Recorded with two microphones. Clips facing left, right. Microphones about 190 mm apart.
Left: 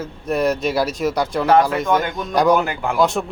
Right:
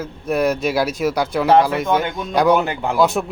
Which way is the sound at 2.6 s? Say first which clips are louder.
Right 1 dB; 30° right (ahead or behind).